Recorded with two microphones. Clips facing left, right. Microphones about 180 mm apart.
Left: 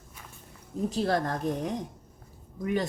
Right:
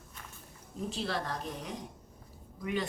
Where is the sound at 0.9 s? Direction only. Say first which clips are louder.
Left 8 dB; 45° left (ahead or behind).